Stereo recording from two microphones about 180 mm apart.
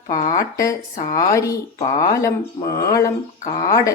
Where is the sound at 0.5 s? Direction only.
20° left (ahead or behind).